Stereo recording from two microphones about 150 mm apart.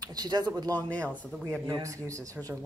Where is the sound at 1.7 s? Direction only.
20° right (ahead or behind).